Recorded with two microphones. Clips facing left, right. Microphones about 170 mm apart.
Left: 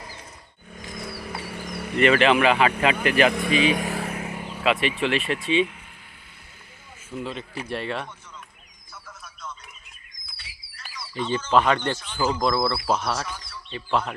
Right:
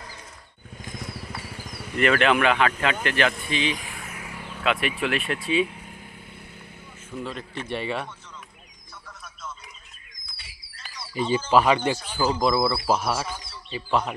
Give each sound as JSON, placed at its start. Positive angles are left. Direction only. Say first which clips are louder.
{"t": 1.1, "sound": "a sound", "louder": "left 3 dB", "side_deg": 65}
{"t": 2.0, "sound": "speech", "louder": "left 2 dB", "side_deg": 0}
{"t": 3.3, "sound": "speech", "louder": "left 6 dB", "side_deg": 65}
{"t": 4.1, "sound": "vehicle", "louder": "left 6 dB", "side_deg": 25}
{"t": 4.6, "sound": "speech", "louder": "left 2 dB", "side_deg": 0}
{"t": 7.2, "sound": "speech", "louder": "left 1 dB", "side_deg": 0}
{"t": 9.0, "sound": "a sound", "louder": "even", "side_deg": 0}
{"t": 11.1, "sound": "speech", "louder": "right 1 dB", "side_deg": -10}